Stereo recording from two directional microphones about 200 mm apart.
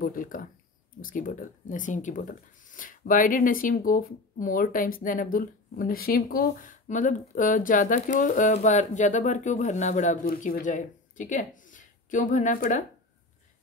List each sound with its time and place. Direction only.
0.0 s speech: 45° left (ahead or behind)